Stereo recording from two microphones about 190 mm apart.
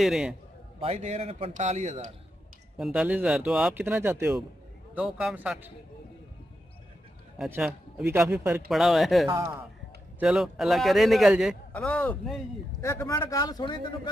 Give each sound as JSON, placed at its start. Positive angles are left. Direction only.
{"t": 0.0, "sound": "a man's voice", "side_deg": -5}
{"t": 0.7, "sound": "a man's voice", "side_deg": -30}
{"t": 2.8, "sound": "a man's voice", "side_deg": -5}
{"t": 7.3, "sound": "a man's voice", "side_deg": -5}
{"t": 8.6, "sound": "a man's voice", "side_deg": 0}